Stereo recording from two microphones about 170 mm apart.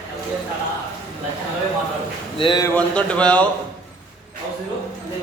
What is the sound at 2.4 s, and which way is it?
Speech, 25° left (ahead or behind).